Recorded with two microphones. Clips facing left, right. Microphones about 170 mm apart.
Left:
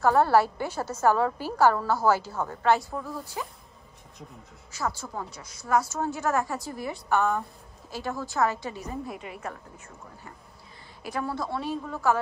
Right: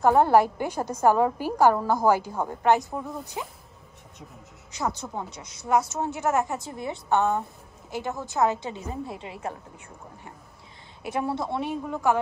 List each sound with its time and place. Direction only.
0.0 s a woman's voice: 15° right (ahead or behind)
4.7 s a woman's voice: 20° right (ahead or behind)
11.0 s a woman's voice: 20° right (ahead or behind)